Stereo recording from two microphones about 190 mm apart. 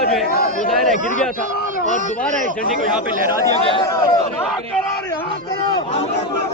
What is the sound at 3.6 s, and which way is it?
Speech, 25° left (ahead or behind).